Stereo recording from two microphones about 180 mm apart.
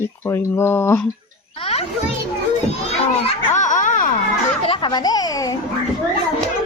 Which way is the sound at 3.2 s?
40° left (ahead or behind).